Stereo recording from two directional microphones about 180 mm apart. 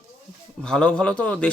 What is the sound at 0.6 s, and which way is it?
Speech, 5° left (ahead or behind).